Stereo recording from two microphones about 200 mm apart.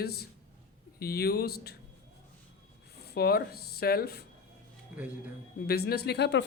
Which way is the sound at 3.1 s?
50° left (ahead or behind).